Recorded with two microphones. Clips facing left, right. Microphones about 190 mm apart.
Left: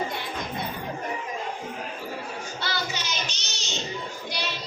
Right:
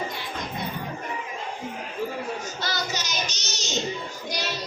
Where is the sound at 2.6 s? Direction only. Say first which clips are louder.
Right 1 dB; 40° right (ahead or behind).